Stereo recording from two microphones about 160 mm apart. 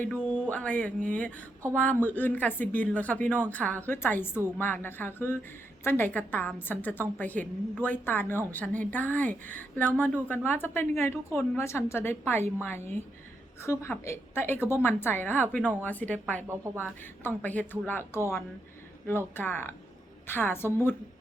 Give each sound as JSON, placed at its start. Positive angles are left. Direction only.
{"t": 0.0, "sound": "a woman's voice", "side_deg": 10}
{"t": 16.5, "sound": "a woman's voice", "side_deg": -15}
{"t": 16.8, "sound": "a woman's voice", "side_deg": 10}